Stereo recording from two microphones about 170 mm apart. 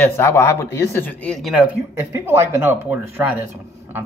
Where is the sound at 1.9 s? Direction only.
15° right (ahead or behind).